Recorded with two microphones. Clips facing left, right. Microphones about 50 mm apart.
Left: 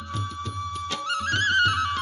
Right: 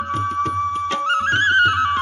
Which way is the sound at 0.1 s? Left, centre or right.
Right.